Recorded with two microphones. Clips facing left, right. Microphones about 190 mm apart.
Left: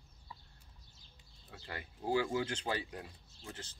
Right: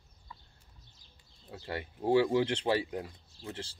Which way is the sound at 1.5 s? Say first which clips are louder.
Right 8 dB; 30° right (ahead or behind).